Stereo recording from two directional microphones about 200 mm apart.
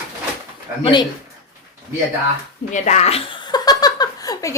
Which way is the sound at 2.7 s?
35° left (ahead or behind).